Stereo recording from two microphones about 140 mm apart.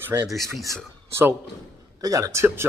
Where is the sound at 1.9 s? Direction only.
25° right (ahead or behind).